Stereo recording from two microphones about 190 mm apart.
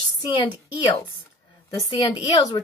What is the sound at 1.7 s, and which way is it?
Speech, 20° left (ahead or behind).